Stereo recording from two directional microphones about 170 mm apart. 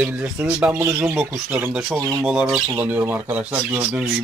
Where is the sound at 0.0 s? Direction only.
10° right (ahead or behind).